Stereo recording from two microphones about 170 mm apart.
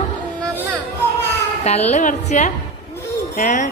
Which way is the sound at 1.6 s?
40° left (ahead or behind).